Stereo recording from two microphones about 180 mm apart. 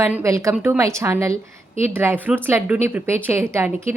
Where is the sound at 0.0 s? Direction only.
15° right (ahead or behind).